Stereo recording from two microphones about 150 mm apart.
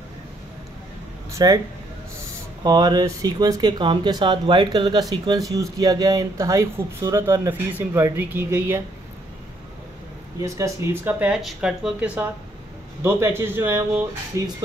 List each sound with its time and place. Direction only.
1.3 s speech: 25° right (ahead or behind)
2.6 s speech: 25° right (ahead or behind)
10.4 s speech: 20° right (ahead or behind)